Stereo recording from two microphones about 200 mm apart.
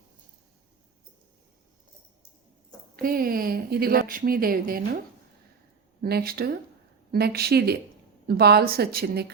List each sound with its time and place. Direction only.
2.9 s a woman's voice: 45° right (ahead or behind)
6.0 s a woman's voice: 50° right (ahead or behind)